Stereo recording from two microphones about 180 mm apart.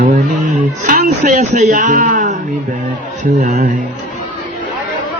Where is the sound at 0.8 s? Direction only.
45° right (ahead or behind).